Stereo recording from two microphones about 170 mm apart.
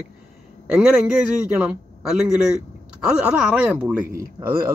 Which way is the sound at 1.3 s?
5° right (ahead or behind).